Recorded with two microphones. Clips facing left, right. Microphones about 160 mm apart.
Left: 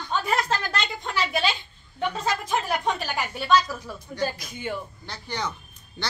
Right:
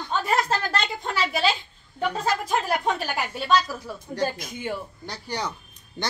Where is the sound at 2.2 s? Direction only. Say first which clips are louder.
Right 2 dB; 5° right (ahead or behind).